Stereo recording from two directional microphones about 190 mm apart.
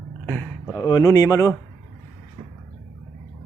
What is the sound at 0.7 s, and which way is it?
Speech, 20° left (ahead or behind).